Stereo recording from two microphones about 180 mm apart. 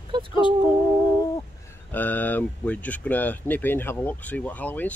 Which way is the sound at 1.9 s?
10° left (ahead or behind).